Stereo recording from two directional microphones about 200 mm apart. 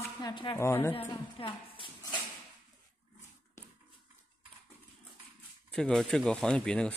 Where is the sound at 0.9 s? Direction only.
25° left (ahead or behind).